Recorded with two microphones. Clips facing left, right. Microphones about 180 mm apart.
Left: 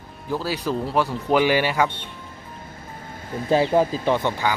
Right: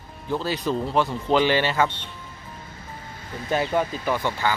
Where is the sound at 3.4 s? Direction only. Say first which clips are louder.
Left 5 dB; 30° left (ahead or behind).